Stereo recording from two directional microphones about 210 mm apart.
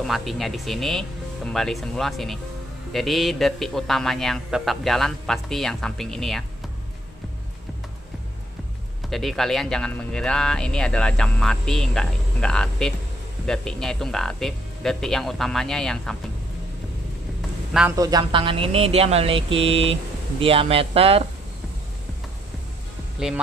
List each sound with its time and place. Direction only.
0.0 s speech: centre (ahead or behind)
9.1 s speech: centre (ahead or behind)
17.9 s speech: 20° right (ahead or behind)
23.1 s speech: centre (ahead or behind)